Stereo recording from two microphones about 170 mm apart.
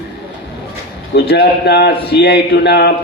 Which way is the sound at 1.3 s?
75° left (ahead or behind).